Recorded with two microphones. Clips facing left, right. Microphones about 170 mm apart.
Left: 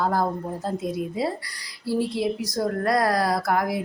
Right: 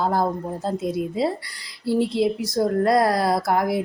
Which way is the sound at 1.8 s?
25° right (ahead or behind).